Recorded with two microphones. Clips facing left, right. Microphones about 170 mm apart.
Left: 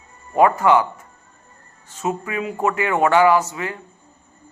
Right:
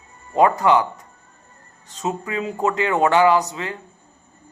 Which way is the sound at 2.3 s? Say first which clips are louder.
Right 2 dB; 25° right (ahead or behind).